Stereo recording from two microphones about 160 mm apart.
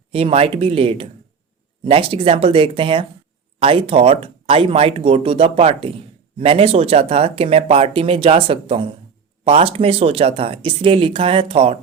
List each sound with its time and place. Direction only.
0.1 s speech: 35° right (ahead or behind)